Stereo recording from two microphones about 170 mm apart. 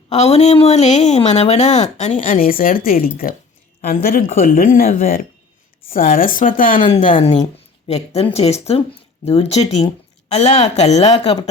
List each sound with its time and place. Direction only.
0.1 s a woman's voice: 40° left (ahead or behind)
5.9 s a woman's voice: 55° left (ahead or behind); by 11.3 s 40° left (ahead or behind)